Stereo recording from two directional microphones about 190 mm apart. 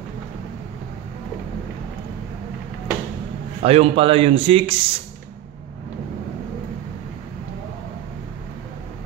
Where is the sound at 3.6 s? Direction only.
30° right (ahead or behind).